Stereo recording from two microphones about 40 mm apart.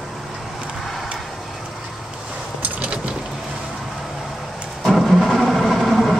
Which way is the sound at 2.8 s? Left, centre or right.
Right.